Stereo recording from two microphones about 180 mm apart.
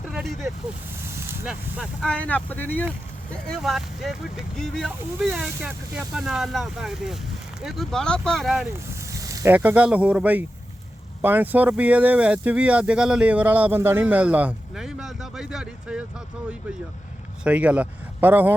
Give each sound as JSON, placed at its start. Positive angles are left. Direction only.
{"t": 0.1, "sound": "vehicle", "side_deg": 0}
{"t": 1.0, "sound": "speech", "side_deg": -15}
{"t": 2.1, "sound": "speech", "side_deg": 10}
{"t": 3.5, "sound": "speech", "side_deg": 0}
{"t": 8.9, "sound": "speech", "side_deg": -15}
{"t": 17.4, "sound": "speech", "side_deg": -5}